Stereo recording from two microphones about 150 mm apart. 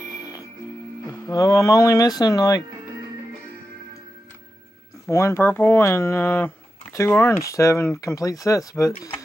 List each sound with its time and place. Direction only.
0.2 s music: 25° left (ahead or behind)
1.0 s speech: 25° left (ahead or behind)
5.1 s speech: 20° left (ahead or behind)